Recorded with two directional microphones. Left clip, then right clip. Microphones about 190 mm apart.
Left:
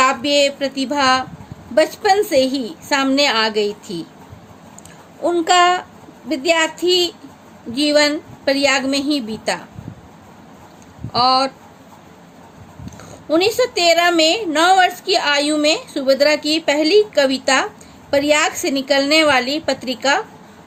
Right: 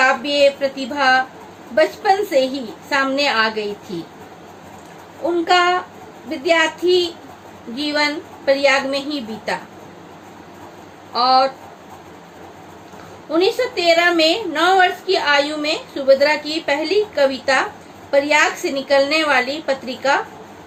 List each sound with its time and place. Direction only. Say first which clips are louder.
0.0 s a sound: even; 65° left (ahead or behind)
1.7 s a woman's voice: left 1 dB; 65° left (ahead or behind)
5.5 s a woman's voice: left 2 dB; 65° left (ahead or behind)
11.1 s speech: right 1 dB; 65° left (ahead or behind)
13.3 s a woman's voice: left 2 dB; 65° left (ahead or behind)